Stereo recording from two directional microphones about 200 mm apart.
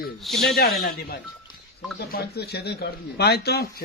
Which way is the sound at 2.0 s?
55° left (ahead or behind).